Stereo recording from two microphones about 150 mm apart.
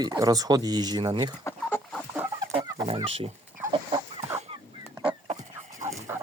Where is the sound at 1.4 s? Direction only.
15° left (ahead or behind).